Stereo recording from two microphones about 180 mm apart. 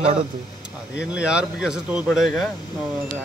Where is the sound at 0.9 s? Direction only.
5° right (ahead or behind).